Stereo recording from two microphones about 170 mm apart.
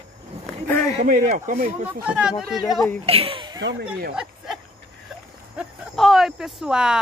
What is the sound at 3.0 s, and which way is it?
Speech, 35° right (ahead or behind).